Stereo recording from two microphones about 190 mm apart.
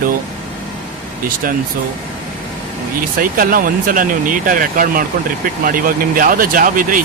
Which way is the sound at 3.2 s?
50° right (ahead or behind).